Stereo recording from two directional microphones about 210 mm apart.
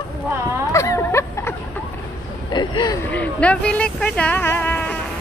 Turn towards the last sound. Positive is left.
turn(degrees=10)  # may be behind; listen again after turning